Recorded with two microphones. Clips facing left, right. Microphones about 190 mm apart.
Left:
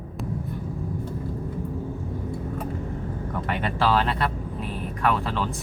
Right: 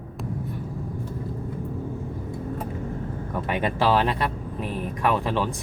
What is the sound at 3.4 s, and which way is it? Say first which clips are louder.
Speech: right 2 dB; 15° right (ahead or behind).